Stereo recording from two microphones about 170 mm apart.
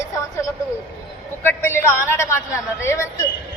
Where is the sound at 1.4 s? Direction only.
15° left (ahead or behind).